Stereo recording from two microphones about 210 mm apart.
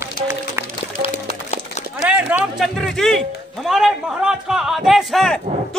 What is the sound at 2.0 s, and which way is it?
Music, 10° right (ahead or behind).